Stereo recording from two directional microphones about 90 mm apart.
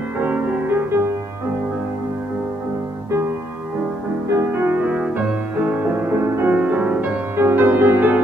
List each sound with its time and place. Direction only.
0.2 s music: 15° right (ahead or behind)
4.3 s music: 25° right (ahead or behind)
6.5 s music: 15° right (ahead or behind)